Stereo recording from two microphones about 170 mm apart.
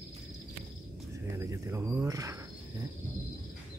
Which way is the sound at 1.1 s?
15° right (ahead or behind).